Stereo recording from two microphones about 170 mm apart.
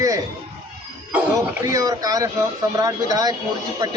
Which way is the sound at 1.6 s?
20° right (ahead or behind).